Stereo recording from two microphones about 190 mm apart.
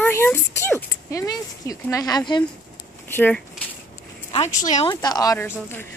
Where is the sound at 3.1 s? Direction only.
10° left (ahead or behind).